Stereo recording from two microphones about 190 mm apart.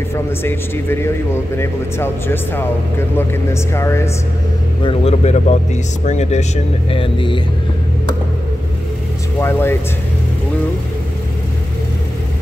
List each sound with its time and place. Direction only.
0.1 s a man's voice: 10° left (ahead or behind)
4.8 s speech: 35° left (ahead or behind)
9.4 s a man's voice: 10° left (ahead or behind)